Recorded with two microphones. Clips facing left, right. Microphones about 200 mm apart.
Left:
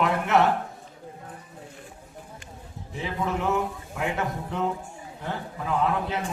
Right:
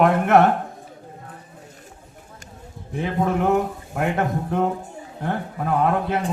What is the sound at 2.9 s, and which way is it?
Speech, 55° right (ahead or behind).